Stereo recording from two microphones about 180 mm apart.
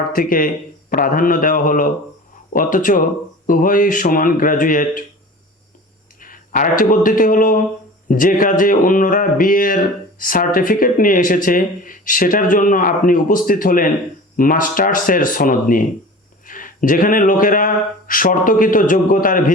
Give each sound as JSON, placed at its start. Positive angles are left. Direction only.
{"t": 0.1, "sound": "speech", "side_deg": 50}
{"t": 6.2, "sound": "a man's voice", "side_deg": 50}